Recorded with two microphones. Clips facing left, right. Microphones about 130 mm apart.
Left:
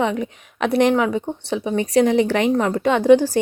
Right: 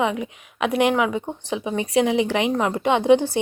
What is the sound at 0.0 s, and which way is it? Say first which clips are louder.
Speech: left 2 dB; 40° left (ahead or behind).